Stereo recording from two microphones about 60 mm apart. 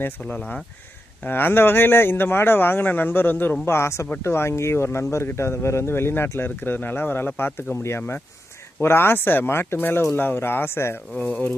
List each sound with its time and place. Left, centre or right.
0.0 s speech: left
0.3 s speech: centre
1.2 s speech: left
3.7 s speech: left
6.4 s speech: left
11.1 s speech: left